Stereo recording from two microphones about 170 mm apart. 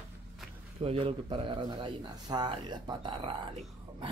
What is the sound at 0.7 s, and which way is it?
Speech, 35° right (ahead or behind).